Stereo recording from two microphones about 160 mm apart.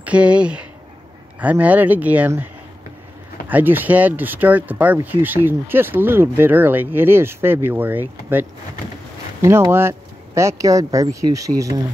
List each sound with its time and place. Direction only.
0.0 s speech: 5° right (ahead or behind)